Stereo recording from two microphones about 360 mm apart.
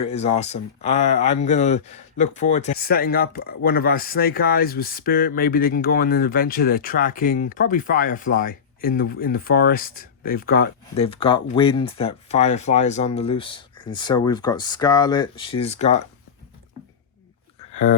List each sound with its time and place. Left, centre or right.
0.1 s speech: centre